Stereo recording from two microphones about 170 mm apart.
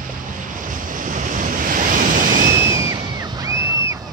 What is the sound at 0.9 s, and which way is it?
Waves, 50° right (ahead or behind).